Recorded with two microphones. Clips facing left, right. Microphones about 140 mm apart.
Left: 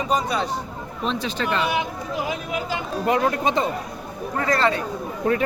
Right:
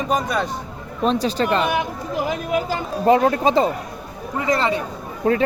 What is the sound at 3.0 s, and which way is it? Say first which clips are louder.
Speech: right 6 dB; 30° right (ahead or behind).